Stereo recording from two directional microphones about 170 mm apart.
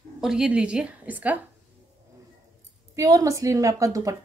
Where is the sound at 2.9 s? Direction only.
20° right (ahead or behind).